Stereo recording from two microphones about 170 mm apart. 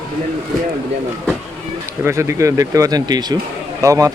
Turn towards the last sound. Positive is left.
turn(degrees=-20)  # may be behind; listen again after turning